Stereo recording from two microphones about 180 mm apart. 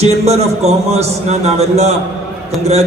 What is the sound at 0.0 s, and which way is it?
A man's voice, 35° right (ahead or behind).